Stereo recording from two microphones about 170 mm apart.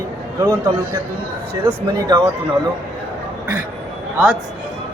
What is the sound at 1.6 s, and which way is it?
Speech, 15° right (ahead or behind).